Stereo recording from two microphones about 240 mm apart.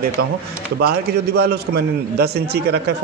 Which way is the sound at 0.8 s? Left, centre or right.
Right.